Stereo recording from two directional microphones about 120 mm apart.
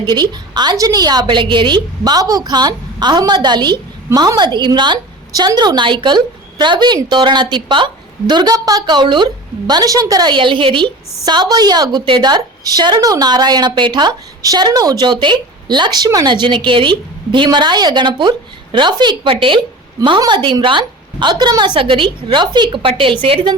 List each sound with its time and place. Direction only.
0.0 s a woman's voice: 35° right (ahead or behind)